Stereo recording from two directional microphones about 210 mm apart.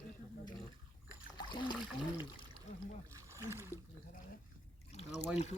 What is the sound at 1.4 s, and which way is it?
Trickle, 20° left (ahead or behind).